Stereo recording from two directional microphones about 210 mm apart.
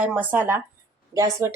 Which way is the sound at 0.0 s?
10° right (ahead or behind).